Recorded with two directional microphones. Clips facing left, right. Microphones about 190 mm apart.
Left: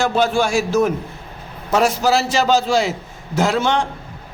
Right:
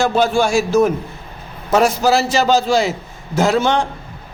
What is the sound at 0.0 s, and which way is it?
Speech, 30° right (ahead or behind).